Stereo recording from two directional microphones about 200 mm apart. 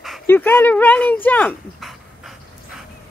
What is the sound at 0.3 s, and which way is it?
Speech, 10° left (ahead or behind).